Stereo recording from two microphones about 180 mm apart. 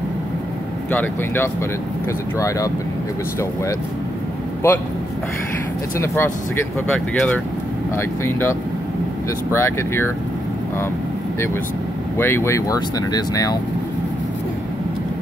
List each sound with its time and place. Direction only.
0.9 s speech: 15° left (ahead or behind)
4.6 s speech: 15° left (ahead or behind)
5.9 s speech: 15° left (ahead or behind)
7.9 s speech: 15° left (ahead or behind)
12.2 s speech: 15° left (ahead or behind)